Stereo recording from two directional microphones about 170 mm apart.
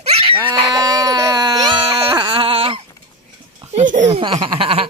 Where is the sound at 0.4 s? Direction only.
25° right (ahead or behind).